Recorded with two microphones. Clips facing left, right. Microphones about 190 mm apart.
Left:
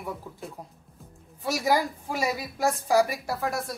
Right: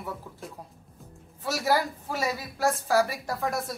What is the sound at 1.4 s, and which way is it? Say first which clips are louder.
Speech: left 1 dB; 15° left (ahead or behind).